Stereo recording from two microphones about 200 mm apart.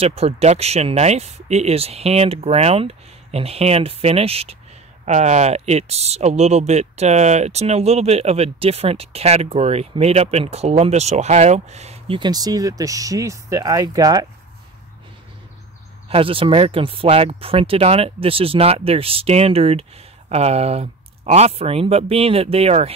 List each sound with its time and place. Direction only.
0.0 s speech: 30° right (ahead or behind)
16.1 s speech: 25° right (ahead or behind)